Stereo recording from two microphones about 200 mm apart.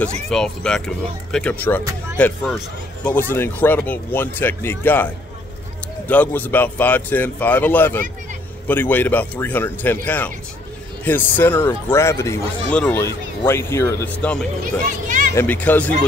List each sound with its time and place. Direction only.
0.3 s speech: centre (ahead or behind)
15.0 s a sound: 40° right (ahead or behind)
15.3 s speech: 10° left (ahead or behind)